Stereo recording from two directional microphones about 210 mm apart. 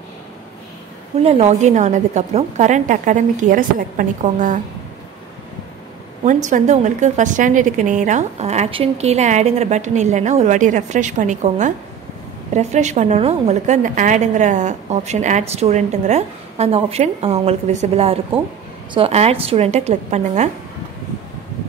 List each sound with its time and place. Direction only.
1.2 s a woman's voice: 30° right (ahead or behind)
6.2 s a woman's voice: 35° right (ahead or behind)